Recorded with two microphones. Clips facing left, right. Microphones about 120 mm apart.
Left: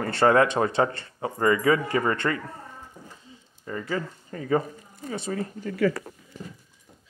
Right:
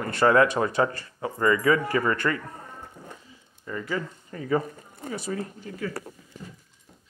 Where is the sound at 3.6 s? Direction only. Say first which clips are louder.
Left 1 dB; 35° left (ahead or behind).